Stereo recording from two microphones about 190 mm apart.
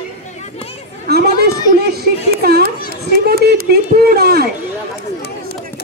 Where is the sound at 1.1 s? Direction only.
55° right (ahead or behind).